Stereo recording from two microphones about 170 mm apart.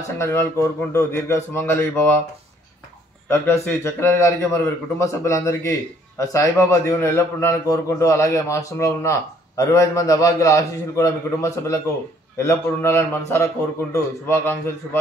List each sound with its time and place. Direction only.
0.2 s a man's voice: 15° left (ahead or behind)
3.3 s a man's voice: 15° left (ahead or behind)
14.2 s a man's voice: 10° left (ahead or behind)